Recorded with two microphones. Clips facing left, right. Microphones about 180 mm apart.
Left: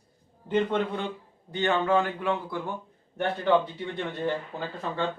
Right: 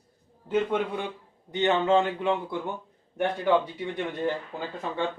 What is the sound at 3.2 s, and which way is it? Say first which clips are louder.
Speech: even; 10° right (ahead or behind).